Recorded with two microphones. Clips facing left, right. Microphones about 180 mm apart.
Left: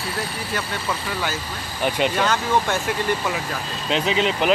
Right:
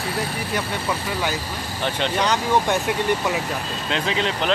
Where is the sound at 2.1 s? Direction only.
20° right (ahead or behind).